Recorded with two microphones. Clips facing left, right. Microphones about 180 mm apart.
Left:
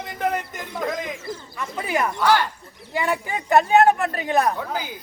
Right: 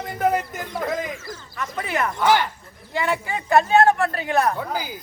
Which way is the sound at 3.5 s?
15° left (ahead or behind).